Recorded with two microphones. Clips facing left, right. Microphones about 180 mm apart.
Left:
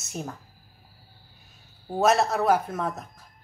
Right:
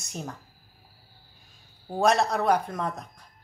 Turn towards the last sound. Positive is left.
turn(degrees=5)  # may be behind; listen again after turning